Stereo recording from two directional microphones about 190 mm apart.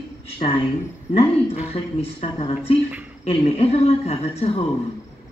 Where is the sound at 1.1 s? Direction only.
35° left (ahead or behind).